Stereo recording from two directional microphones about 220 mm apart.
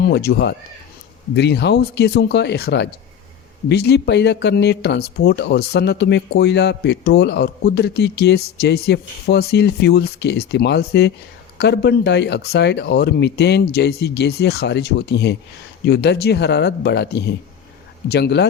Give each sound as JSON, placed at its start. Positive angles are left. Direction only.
{"t": 0.0, "sound": "speech", "side_deg": 45}